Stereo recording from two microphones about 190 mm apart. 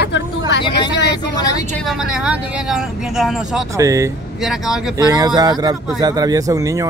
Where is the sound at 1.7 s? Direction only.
Centre (ahead or behind).